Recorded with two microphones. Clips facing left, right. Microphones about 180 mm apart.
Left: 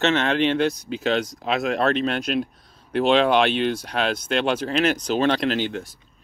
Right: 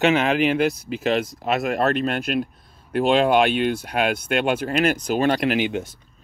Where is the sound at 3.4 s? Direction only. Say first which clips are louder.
Right 1 dB; 45° right (ahead or behind).